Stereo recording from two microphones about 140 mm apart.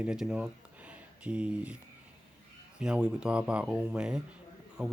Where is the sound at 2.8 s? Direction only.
5° right (ahead or behind).